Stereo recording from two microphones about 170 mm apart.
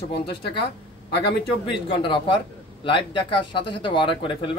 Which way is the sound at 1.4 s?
30° left (ahead or behind).